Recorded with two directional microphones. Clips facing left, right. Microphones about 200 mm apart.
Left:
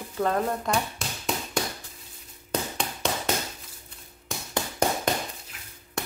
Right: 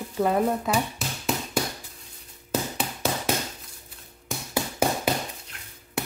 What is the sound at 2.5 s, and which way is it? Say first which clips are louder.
Tap: right 2 dB; 5° right (ahead or behind).